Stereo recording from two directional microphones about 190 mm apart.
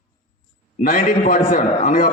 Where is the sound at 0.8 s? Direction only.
45° left (ahead or behind).